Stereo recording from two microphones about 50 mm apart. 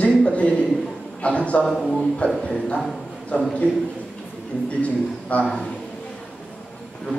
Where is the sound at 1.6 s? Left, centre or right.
Centre.